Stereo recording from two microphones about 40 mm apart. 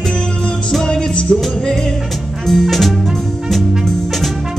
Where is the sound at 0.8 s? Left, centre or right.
Centre.